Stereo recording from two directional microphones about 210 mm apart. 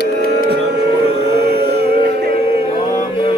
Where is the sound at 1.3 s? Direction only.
50° right (ahead or behind).